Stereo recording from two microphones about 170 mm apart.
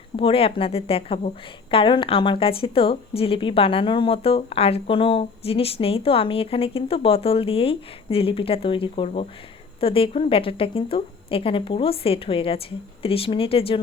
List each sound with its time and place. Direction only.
0.2 s a woman's voice: 35° left (ahead or behind)